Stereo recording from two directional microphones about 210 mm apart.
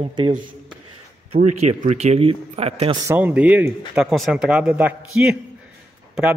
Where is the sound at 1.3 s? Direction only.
35° right (ahead or behind).